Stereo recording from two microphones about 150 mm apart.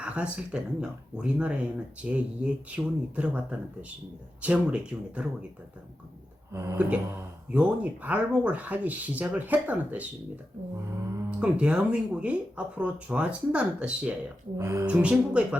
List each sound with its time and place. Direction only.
0.0 s speech: 10° right (ahead or behind)
6.5 s speech: 20° right (ahead or behind)
11.1 s speech: 15° right (ahead or behind)
14.9 s speech: 5° right (ahead or behind)